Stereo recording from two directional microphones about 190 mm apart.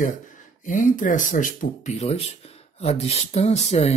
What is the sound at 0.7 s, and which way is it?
Speech, 45° left (ahead or behind).